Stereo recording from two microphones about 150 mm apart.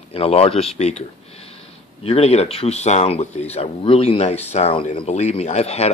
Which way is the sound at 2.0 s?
45° left (ahead or behind).